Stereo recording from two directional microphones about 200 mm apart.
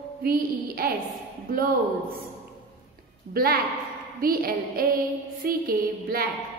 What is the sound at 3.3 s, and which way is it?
A woman's voice, 50° right (ahead or behind).